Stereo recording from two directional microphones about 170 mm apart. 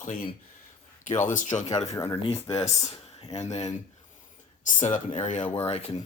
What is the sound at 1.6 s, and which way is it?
Speech, 20° left (ahead or behind).